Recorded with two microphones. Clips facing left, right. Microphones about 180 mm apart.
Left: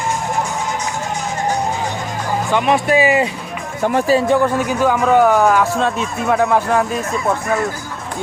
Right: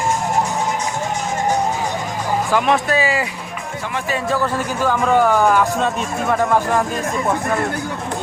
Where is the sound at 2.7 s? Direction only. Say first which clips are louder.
Left 4 dB; 15° left (ahead or behind).